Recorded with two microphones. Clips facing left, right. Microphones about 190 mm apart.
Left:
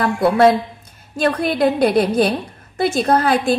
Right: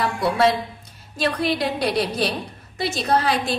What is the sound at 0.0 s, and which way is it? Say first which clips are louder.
A woman's voice: left 6 dB; 55° left (ahead or behind).